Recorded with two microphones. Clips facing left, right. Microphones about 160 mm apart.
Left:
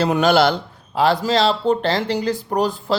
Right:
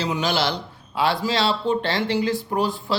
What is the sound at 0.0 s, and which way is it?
A man's voice, 55° left (ahead or behind).